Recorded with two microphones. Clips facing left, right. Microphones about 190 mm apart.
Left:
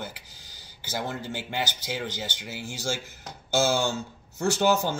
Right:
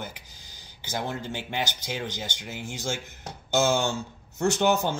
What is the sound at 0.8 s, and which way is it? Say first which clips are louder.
Speech: right 1 dB; 10° left (ahead or behind).